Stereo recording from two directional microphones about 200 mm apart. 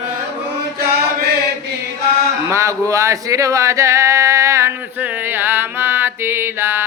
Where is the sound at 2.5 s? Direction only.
15° right (ahead or behind).